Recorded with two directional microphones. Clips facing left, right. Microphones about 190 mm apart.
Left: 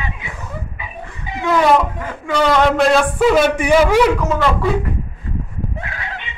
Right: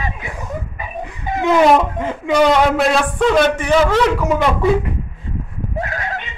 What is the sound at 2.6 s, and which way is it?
A man's voice, 5° right (ahead or behind).